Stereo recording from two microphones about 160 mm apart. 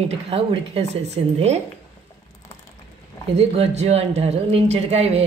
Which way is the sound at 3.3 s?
40° right (ahead or behind).